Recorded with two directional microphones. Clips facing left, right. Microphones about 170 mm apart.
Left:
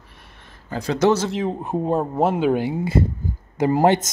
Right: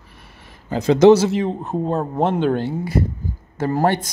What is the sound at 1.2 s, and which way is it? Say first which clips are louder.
Speech: right 3 dB; centre (ahead or behind).